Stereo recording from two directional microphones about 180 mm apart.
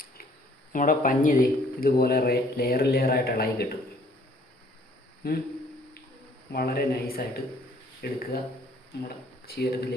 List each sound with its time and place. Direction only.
0.7 s speech: 50° left (ahead or behind)
5.2 s speech: 55° left (ahead or behind)
6.5 s speech: 60° left (ahead or behind)